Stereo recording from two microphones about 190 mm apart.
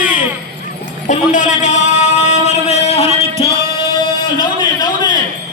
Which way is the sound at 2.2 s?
35° left (ahead or behind).